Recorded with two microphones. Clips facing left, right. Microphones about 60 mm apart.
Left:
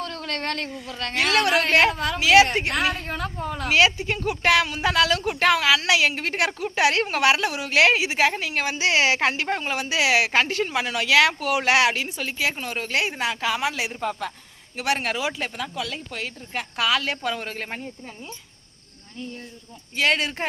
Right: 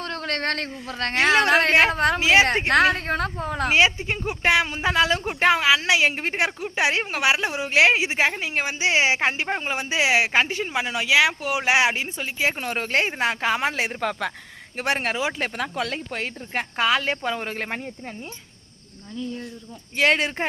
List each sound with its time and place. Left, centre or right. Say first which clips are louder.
0.0 s a sound: right 2 dB; right
0.7 s a woman's voice: right 3 dB; right
1.1 s speech: right 3 dB; right
1.5 s a woman's voice: right 1 dB; right
2.2 s speech: left 3 dB; right
2.8 s a woman's voice: right 5 dB; right
3.7 s speech: left 1 dB; right
12.5 s speech: right 2 dB; right
15.4 s speech: right 3 dB; right
20.0 s speech: right 2 dB; right